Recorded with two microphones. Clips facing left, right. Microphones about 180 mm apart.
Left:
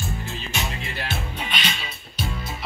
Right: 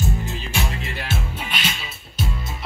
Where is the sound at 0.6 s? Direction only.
5° right (ahead or behind).